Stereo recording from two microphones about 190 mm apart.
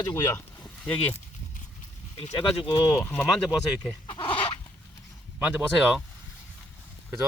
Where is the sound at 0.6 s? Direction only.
10° left (ahead or behind).